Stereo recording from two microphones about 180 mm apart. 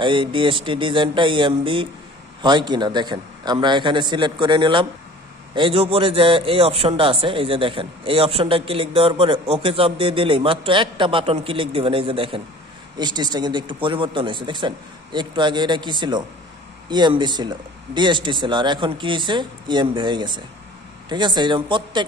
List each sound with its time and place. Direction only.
0.0 s a man's voice: 30° right (ahead or behind)